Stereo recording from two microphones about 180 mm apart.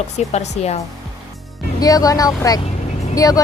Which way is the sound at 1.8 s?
20° left (ahead or behind).